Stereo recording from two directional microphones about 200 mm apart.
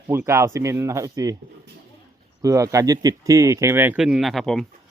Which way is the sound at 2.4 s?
15° right (ahead or behind).